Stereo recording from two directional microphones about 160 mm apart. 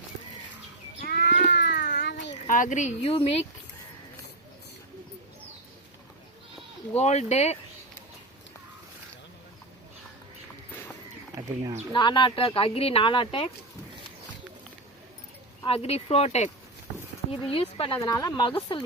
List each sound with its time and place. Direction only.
1.0 s livestock: 80° left
1.3 s a sound: 50° left (ahead or behind)
1.5 s a sound: 90° left
2.5 s speech: 55° left (ahead or behind)
6.9 s speech: 45° left (ahead or behind)
11.9 s speech: 30° left (ahead or behind)
15.6 s speech: 40° left (ahead or behind)